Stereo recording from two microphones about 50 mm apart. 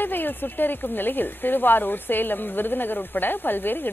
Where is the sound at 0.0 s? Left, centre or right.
Left.